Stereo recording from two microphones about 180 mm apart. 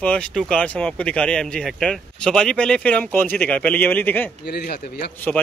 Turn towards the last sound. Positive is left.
turn(degrees=60)  # may be behind; listen again after turning